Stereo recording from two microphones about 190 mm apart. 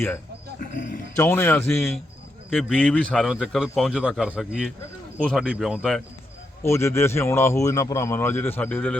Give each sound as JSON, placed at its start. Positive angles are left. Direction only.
{"t": 0.6, "sound": "roaring cats", "side_deg": 45}
{"t": 1.1, "sound": "a man's voice", "side_deg": 15}
{"t": 2.6, "sound": "speech", "side_deg": 0}
{"t": 6.6, "sound": "a man's voice", "side_deg": 15}